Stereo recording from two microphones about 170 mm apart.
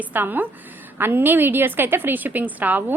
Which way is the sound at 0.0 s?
10° right (ahead or behind).